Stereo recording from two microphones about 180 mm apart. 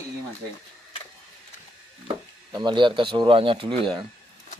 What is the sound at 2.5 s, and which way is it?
Speech, 25° right (ahead or behind).